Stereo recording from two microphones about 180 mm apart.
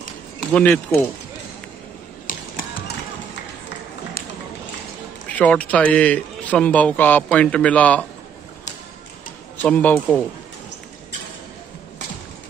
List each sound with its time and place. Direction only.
0.4 s speech: 5° left (ahead or behind)
2.3 s music: 50° left (ahead or behind)
5.3 s a man's voice: 10° left (ahead or behind)
9.6 s a man's voice: 10° left (ahead or behind)